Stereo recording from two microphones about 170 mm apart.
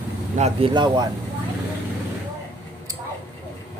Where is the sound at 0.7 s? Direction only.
25° right (ahead or behind).